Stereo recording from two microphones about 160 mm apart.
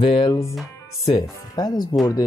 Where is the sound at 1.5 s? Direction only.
25° left (ahead or behind).